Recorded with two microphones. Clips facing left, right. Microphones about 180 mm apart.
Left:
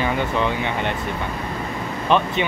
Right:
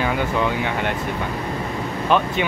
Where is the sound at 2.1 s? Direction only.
5° right (ahead or behind).